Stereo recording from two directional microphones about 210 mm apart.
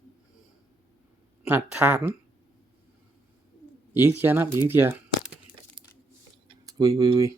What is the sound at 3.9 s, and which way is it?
Speech, 10° right (ahead or behind).